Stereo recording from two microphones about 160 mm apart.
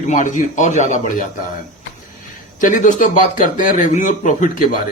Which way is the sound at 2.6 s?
55° left (ahead or behind).